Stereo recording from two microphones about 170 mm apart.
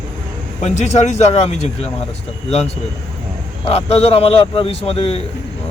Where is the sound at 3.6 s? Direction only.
35° left (ahead or behind).